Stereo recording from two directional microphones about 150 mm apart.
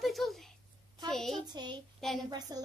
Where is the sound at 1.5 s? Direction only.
30° right (ahead or behind).